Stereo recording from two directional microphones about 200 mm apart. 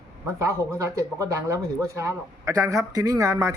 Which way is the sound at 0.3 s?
15° right (ahead or behind).